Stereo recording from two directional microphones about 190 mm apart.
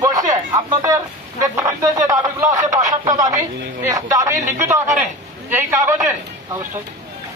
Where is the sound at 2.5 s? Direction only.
40° right (ahead or behind).